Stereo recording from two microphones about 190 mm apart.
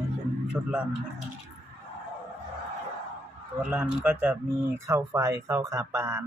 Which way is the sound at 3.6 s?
5° right (ahead or behind).